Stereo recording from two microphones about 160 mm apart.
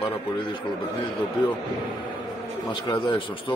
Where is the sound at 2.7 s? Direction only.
30° left (ahead or behind).